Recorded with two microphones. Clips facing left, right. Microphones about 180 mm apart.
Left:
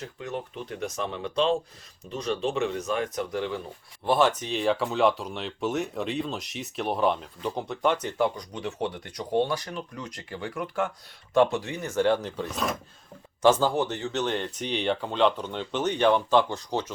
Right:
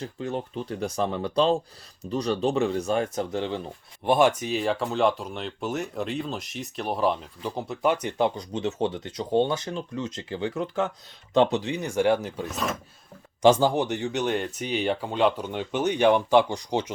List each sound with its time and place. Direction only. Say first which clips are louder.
0.0 s speech: right 4 dB; 30° right (ahead or behind)
4.0 s speech: right 2 dB; 15° right (ahead or behind)
8.0 s speech: right 1 dB; 25° right (ahead or behind); by 12.7 s 5° right (ahead or behind)
13.4 s speech: right 2 dB; 15° right (ahead or behind)